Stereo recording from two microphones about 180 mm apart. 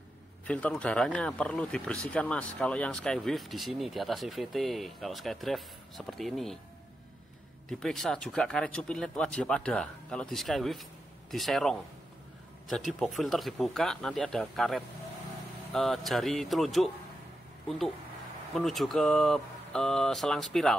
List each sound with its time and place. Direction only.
0.5 s speech: 5° left (ahead or behind)
7.8 s speech: centre (ahead or behind)